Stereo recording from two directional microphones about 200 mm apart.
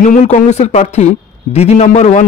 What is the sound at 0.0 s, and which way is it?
A man's voice, 40° left (ahead or behind).